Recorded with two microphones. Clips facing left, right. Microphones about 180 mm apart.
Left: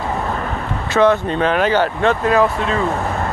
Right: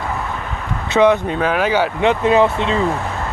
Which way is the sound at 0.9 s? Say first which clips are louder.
Right 1 dB; 15° right (ahead or behind).